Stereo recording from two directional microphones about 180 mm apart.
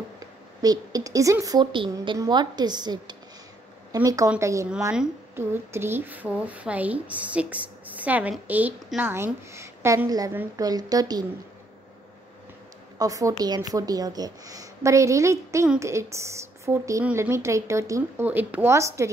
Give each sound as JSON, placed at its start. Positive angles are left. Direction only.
{"t": 0.2, "sound": "a woman's voice", "side_deg": -20}
{"t": 13.0, "sound": "a woman's voice", "side_deg": -20}